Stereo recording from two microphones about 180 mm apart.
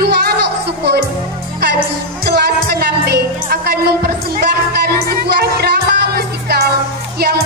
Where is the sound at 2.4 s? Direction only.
60° right (ahead or behind).